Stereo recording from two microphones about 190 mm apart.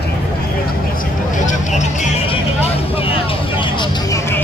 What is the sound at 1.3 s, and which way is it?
Vehicle, 40° left (ahead or behind).